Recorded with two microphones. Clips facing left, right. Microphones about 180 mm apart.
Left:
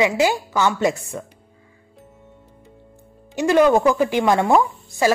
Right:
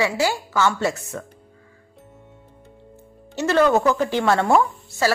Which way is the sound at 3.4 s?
15° left (ahead or behind).